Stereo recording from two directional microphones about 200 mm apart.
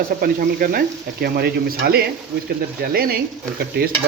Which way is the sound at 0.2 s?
45° right (ahead or behind).